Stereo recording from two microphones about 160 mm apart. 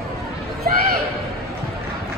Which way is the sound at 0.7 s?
65° right (ahead or behind).